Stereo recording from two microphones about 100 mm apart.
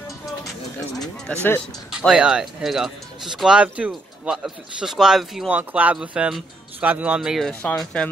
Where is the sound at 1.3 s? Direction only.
15° left (ahead or behind).